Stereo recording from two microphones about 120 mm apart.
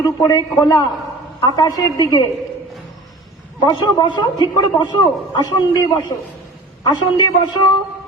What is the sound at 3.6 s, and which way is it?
A woman's voice, 40° left (ahead or behind).